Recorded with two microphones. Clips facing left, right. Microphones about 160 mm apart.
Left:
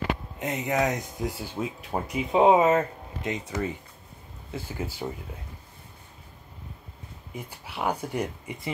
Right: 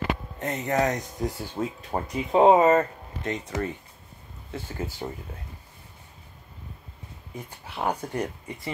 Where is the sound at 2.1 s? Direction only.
5° left (ahead or behind).